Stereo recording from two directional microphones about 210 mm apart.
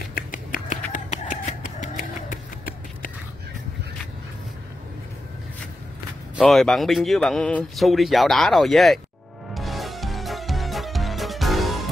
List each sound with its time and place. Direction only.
0.1 s finger snapping: 40° left (ahead or behind)
0.9 s a sound: 40° left (ahead or behind)
6.3 s a man's voice: centre (ahead or behind)
9.5 s music: centre (ahead or behind)